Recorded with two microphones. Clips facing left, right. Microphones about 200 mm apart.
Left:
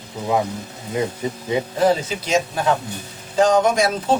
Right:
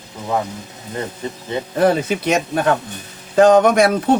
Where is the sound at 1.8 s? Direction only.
60° right (ahead or behind).